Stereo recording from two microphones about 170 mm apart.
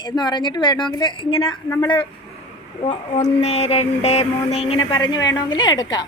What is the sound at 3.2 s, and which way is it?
Mantra, 40° left (ahead or behind).